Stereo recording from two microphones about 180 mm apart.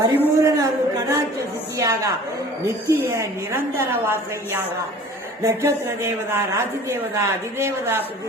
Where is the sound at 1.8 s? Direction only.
20° right (ahead or behind).